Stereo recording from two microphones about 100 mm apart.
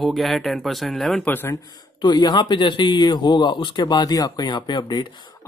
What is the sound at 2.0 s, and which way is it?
Speech, 45° left (ahead or behind).